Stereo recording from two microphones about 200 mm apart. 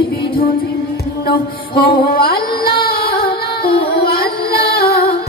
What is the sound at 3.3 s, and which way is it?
Music, 25° left (ahead or behind).